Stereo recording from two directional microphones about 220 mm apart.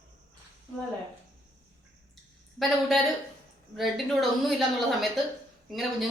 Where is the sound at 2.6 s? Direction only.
Centre (ahead or behind).